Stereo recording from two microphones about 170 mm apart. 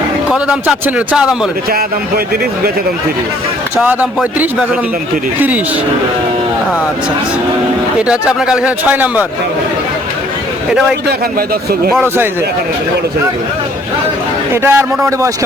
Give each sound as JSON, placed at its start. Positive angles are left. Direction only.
{"t": 0.3, "sound": "speech", "side_deg": -5}
{"t": 1.7, "sound": "speech", "side_deg": -65}
{"t": 3.8, "sound": "speech", "side_deg": -5}
{"t": 8.0, "sound": "speech", "side_deg": -5}
{"t": 10.7, "sound": "speech", "side_deg": -5}
{"t": 11.0, "sound": "speech", "side_deg": -60}
{"t": 14.5, "sound": "speech", "side_deg": -15}